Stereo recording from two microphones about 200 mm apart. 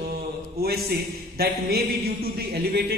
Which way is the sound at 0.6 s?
50° right (ahead or behind).